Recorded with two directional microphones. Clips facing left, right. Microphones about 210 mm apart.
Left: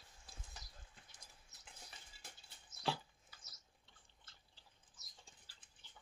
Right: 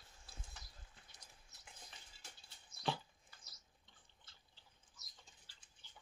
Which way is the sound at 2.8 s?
Centre (ahead or behind).